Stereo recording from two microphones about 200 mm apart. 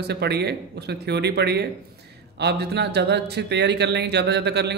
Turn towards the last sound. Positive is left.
turn(degrees=-55)  # may be behind; listen again after turning